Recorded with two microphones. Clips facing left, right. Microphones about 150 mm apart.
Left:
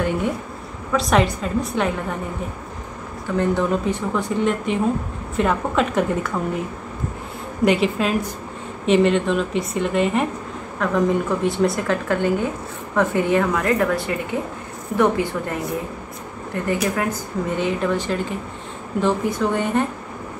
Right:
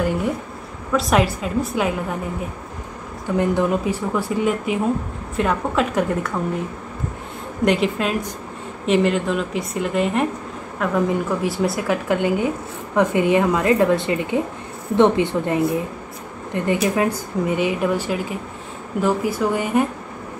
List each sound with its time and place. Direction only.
0.9 s a woman's voice: 5° right (ahead or behind)
3.3 s a woman's voice: 10° right (ahead or behind)
7.6 s a woman's voice: centre (ahead or behind)
12.1 s speech: 15° right (ahead or behind)